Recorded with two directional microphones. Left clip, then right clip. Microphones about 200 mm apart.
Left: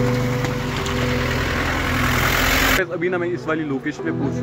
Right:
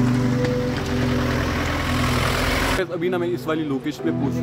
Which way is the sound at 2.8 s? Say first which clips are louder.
Left 2 dB; 5° right (ahead or behind).